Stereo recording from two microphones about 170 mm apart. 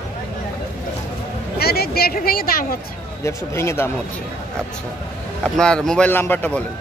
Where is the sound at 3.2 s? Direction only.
15° left (ahead or behind).